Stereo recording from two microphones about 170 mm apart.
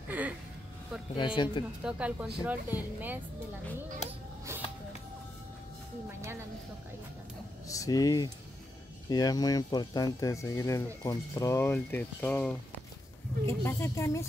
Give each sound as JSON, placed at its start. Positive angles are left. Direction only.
{"t": 0.1, "sound": "vehicle", "side_deg": -10}
{"t": 1.1, "sound": "speech", "side_deg": 30}
{"t": 1.9, "sound": "speech", "side_deg": -5}
{"t": 4.5, "sound": "a sound", "side_deg": -15}
{"t": 7.6, "sound": "speech", "side_deg": 20}